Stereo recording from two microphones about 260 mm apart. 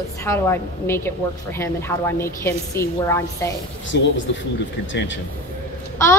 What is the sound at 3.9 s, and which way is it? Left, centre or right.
Speech, left.